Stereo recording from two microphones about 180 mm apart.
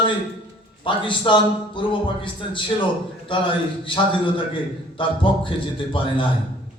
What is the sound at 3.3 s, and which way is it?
Speech, 30° left (ahead or behind).